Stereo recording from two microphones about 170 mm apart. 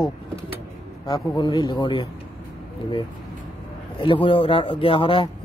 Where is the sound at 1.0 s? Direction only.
25° left (ahead or behind).